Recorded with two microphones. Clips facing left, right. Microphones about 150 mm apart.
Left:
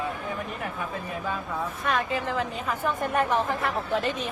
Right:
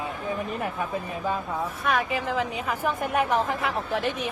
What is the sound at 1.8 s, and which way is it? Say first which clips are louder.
A woman's voice: right 1 dB; 10° right (ahead or behind).